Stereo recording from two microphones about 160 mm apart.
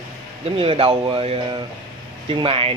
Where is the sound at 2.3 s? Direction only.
35° right (ahead or behind).